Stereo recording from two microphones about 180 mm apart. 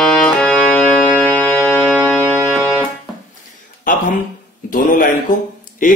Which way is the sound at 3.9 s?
45° left (ahead or behind).